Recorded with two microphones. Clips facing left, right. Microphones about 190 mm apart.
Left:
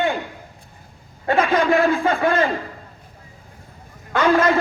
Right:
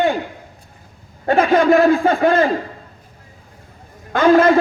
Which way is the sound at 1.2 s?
40° right (ahead or behind).